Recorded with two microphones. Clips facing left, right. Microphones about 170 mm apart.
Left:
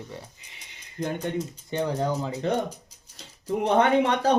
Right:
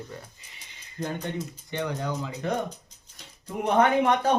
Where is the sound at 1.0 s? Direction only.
25° left (ahead or behind).